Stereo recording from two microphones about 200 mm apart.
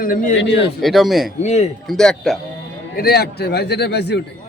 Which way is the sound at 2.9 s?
50° left (ahead or behind).